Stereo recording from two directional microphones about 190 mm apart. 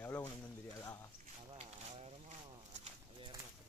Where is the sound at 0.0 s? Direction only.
10° left (ahead or behind).